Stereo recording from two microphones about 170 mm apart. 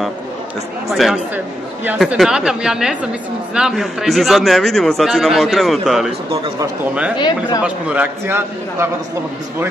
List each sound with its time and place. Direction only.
0.8 s a man's voice: centre (ahead or behind)
7.2 s speech: 25° left (ahead or behind)
7.6 s a man's voice: 10° right (ahead or behind)